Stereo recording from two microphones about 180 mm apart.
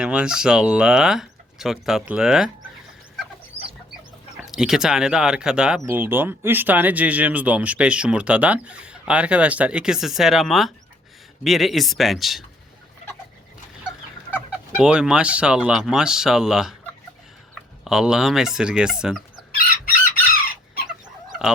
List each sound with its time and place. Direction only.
0.0 s speech: 5° right (ahead or behind)
3.6 s chicken: 30° left (ahead or behind)
4.4 s speech: 5° right (ahead or behind)
14.3 s speech: 5° right (ahead or behind)
17.8 s speech: 5° right (ahead or behind)